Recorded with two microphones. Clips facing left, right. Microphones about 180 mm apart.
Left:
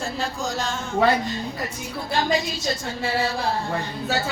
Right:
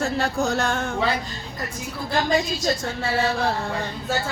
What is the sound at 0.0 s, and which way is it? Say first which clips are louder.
Music: right 5 dB; 65° right (ahead or behind).